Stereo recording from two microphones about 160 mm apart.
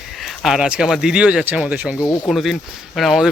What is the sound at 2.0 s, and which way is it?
Speech, 20° left (ahead or behind).